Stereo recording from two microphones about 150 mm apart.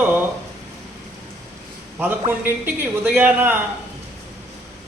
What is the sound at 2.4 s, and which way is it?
A man's voice, 10° right (ahead or behind).